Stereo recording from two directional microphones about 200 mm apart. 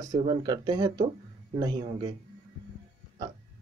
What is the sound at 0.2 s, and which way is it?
Speech, 20° right (ahead or behind).